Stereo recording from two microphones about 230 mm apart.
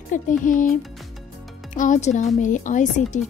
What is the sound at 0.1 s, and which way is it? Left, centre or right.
Speech, left.